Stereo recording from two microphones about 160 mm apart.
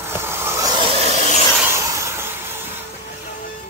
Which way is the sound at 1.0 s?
45° right (ahead or behind).